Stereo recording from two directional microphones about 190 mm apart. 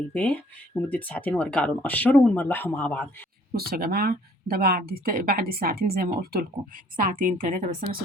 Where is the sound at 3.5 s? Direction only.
55° right (ahead or behind).